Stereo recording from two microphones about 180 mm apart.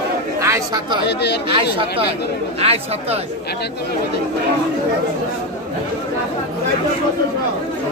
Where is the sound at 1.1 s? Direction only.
70° left (ahead or behind).